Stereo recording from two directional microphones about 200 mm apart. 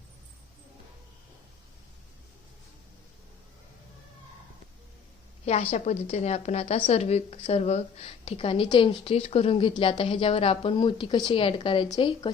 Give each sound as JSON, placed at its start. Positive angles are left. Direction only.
{"t": 5.5, "sound": "a woman's voice", "side_deg": 35}